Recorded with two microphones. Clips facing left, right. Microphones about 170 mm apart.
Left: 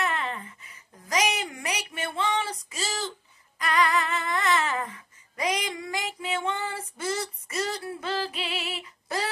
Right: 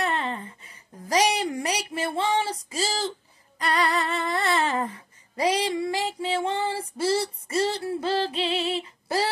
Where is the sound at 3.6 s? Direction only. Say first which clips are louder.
Even; 35° right (ahead or behind).